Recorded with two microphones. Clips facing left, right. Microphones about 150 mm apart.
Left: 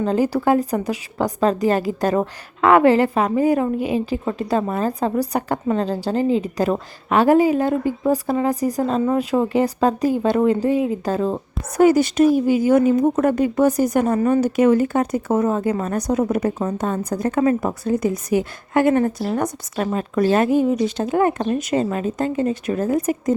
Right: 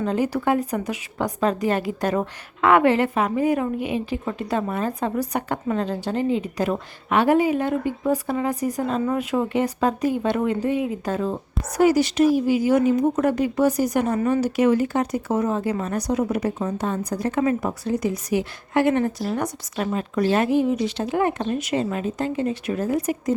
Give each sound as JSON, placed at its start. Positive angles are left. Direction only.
{"t": 0.0, "sound": "a woman's voice", "side_deg": 35}
{"t": 11.8, "sound": "speech", "side_deg": 50}